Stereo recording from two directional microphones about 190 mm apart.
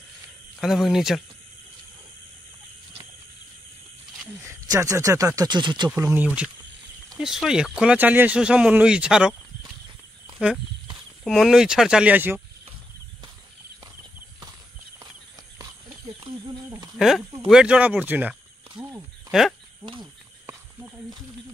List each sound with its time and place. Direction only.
0.6 s speech: centre (ahead or behind)
4.4 s speech: 15° right (ahead or behind)
5.9 s speech: 10° right (ahead or behind)
11.2 s speech: centre (ahead or behind)
17.5 s speech: 5° right (ahead or behind)
18.8 s a sound: 15° right (ahead or behind)
19.8 s speech: 25° right (ahead or behind)